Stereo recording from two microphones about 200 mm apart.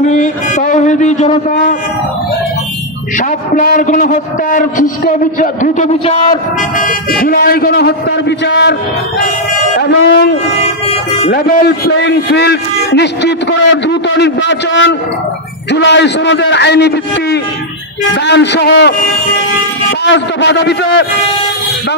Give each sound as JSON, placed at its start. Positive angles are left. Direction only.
{"t": 0.0, "sound": "a man's voice", "side_deg": 40}
{"t": 3.2, "sound": "a man's voice", "side_deg": 40}
{"t": 6.8, "sound": "a man's voice", "side_deg": 45}
{"t": 9.8, "sound": "a man's voice", "side_deg": 60}
{"t": 11.2, "sound": "a man's voice", "side_deg": 45}
{"t": 20.1, "sound": "a man's voice", "side_deg": 65}